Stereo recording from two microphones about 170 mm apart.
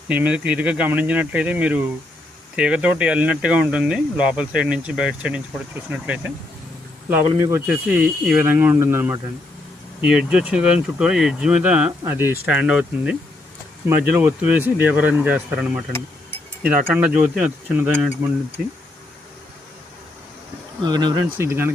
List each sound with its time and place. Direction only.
0.1 s speech: 5° right (ahead or behind)
7.1 s speech: 15° right (ahead or behind)
20.8 s speech: 25° right (ahead or behind)
21.3 s speech: 15° right (ahead or behind)